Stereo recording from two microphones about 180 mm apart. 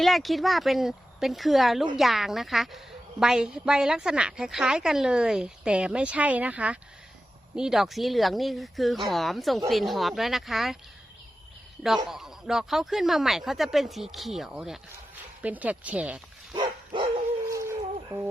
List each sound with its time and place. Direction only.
0.0 s a woman's voice: centre (ahead or behind)
12.0 s a woman's voice: centre (ahead or behind)
16.6 s bow-wow: 25° right (ahead or behind)
17.5 s a sound: 15° right (ahead or behind)